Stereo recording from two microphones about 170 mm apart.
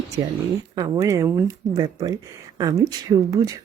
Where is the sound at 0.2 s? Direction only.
30° right (ahead or behind).